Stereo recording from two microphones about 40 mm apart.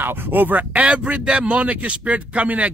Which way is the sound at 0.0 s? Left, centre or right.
Right.